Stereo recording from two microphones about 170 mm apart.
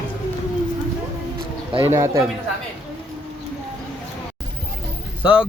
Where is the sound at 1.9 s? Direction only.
15° right (ahead or behind).